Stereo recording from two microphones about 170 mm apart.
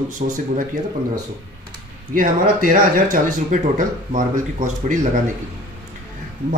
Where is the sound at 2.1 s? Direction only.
55° right (ahead or behind).